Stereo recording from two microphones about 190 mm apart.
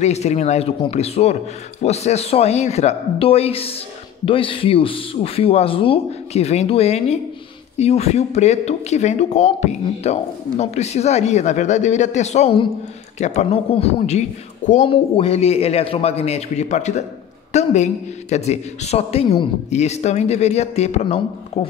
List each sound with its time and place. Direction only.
0.0 s a man's voice: 35° left (ahead or behind)